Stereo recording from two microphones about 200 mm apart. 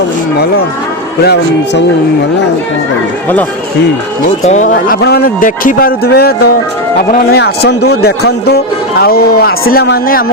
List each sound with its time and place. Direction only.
1.2 s a man's voice: 55° left (ahead or behind)
4.4 s speech: 35° left (ahead or behind)
4.9 s speech: 55° left (ahead or behind)